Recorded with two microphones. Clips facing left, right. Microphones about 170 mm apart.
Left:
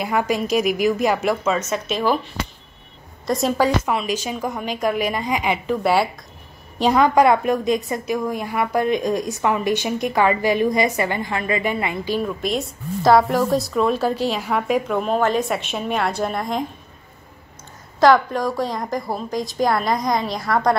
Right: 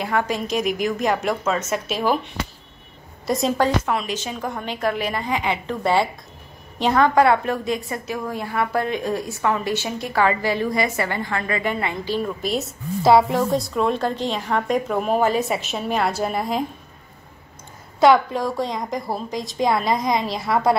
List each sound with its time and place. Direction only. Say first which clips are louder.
0.0 s a woman's voice: left 2 dB; 10° left (ahead or behind)
1.7 s speech: left 1 dB; 10° right (ahead or behind)
3.3 s a woman's voice: left 1 dB; centre (ahead or behind)
12.2 s a woman's voice: even; centre (ahead or behind)
18.0 s a woman's voice: left 1 dB; centre (ahead or behind)